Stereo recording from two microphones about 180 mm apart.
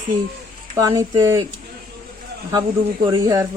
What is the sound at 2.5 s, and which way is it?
Speech, 20° right (ahead or behind).